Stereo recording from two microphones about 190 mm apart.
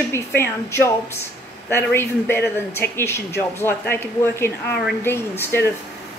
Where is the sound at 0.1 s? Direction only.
15° left (ahead or behind).